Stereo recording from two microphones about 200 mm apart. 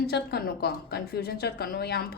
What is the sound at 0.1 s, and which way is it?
A woman's voice, 50° left (ahead or behind).